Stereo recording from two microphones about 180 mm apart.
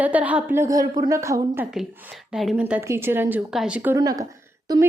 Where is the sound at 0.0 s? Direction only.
10° right (ahead or behind).